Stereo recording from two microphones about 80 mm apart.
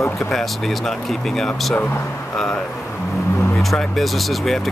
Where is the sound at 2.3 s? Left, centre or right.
Centre.